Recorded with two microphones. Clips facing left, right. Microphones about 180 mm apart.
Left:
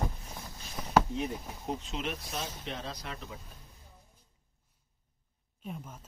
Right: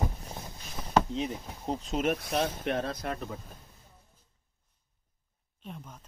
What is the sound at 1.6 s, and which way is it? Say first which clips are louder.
Speech: right 7 dB; 35° right (ahead or behind).